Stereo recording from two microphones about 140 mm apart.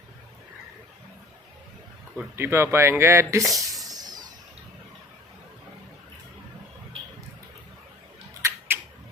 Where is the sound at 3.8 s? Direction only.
30° right (ahead or behind).